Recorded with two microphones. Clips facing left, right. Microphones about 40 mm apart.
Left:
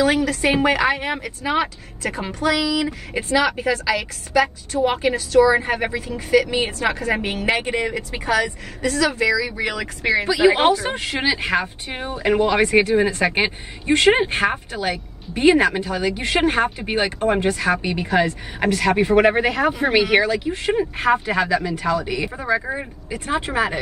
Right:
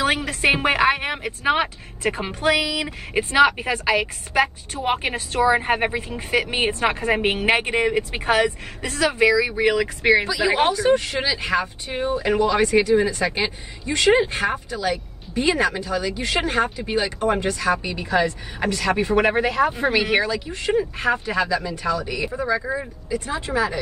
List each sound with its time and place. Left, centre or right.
0.0 s a woman's voice: right
10.2 s speech: left
12.3 s speech: left